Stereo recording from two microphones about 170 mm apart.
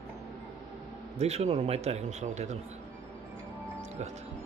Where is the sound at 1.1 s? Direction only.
40° right (ahead or behind).